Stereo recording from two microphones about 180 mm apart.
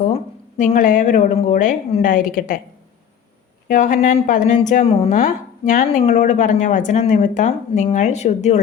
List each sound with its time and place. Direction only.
0.0 s speech: 45° left (ahead or behind)
3.7 s speech: 45° left (ahead or behind)
5.1 s speech: 45° left (ahead or behind)